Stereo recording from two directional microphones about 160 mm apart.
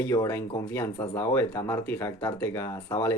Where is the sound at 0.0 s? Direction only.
15° left (ahead or behind).